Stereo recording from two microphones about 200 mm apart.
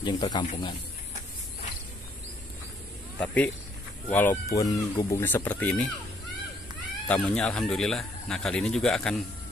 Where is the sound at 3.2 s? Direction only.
5° left (ahead or behind).